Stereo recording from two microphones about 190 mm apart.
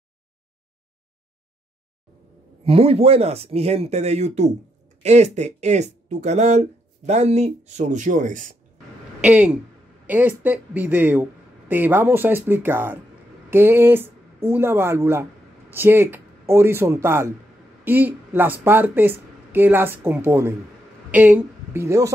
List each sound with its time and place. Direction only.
2.6 s speech: 30° right (ahead or behind)
9.2 s speech: 5° right (ahead or behind)